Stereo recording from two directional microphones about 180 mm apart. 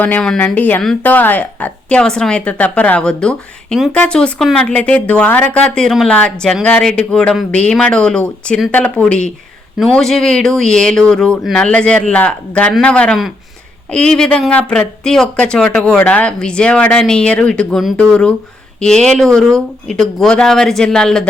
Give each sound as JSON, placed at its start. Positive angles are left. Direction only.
{"t": 0.0, "sound": "speech", "side_deg": 5}